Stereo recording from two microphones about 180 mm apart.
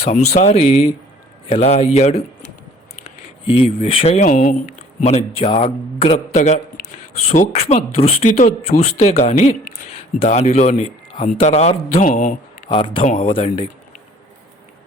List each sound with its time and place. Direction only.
0.3 s a man's voice: 35° left (ahead or behind)
3.6 s a man's voice: 30° left (ahead or behind)
4.3 s a man's voice: 50° left (ahead or behind)
11.9 s speech: 50° left (ahead or behind)
12.6 s speech: 30° left (ahead or behind)